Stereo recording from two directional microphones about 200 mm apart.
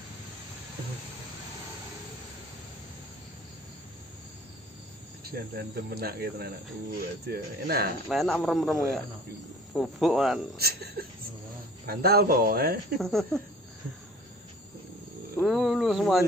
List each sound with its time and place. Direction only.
5.2 s speech: 50° right (ahead or behind)
8.1 s speech: centre (ahead or behind)
10.6 s speech: 50° right (ahead or behind)
12.9 s speech: centre (ahead or behind)
15.4 s a sound: centre (ahead or behind)